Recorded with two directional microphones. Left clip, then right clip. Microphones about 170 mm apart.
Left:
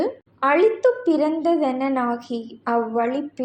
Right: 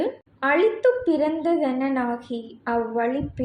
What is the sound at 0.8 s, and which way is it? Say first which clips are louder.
A woman's voice: left 1 dB; 25° left (ahead or behind).